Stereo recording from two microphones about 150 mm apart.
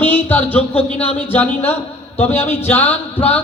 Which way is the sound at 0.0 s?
10° left (ahead or behind).